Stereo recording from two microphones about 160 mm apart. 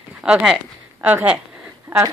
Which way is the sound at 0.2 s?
5° right (ahead or behind).